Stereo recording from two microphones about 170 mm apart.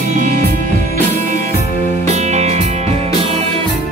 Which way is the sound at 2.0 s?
40° right (ahead or behind).